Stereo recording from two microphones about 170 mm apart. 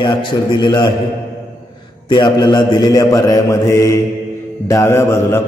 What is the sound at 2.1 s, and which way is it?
A man's voice, 25° left (ahead or behind).